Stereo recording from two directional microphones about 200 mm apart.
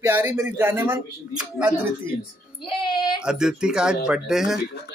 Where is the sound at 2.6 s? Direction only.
25° left (ahead or behind).